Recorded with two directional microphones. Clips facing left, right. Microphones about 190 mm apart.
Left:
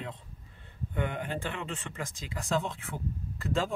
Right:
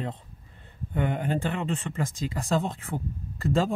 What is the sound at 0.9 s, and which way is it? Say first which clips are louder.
Speech: right 6 dB; 40° right (ahead or behind).